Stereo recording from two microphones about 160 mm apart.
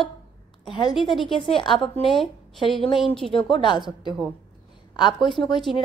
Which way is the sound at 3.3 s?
35° left (ahead or behind).